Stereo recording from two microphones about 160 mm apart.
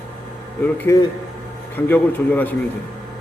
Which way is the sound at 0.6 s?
15° left (ahead or behind).